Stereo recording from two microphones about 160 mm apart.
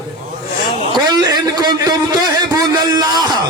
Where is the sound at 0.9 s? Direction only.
25° right (ahead or behind).